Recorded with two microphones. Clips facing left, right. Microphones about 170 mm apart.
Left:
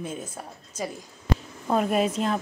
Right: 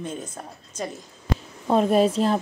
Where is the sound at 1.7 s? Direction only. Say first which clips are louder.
Right 4 dB; 30° right (ahead or behind).